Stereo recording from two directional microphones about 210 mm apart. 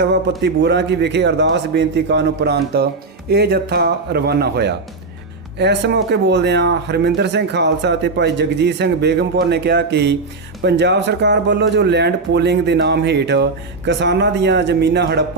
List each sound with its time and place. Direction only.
0.0 s a man's voice: 55° right (ahead or behind)